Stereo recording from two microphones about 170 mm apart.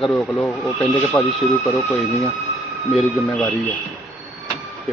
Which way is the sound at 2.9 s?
5° left (ahead or behind).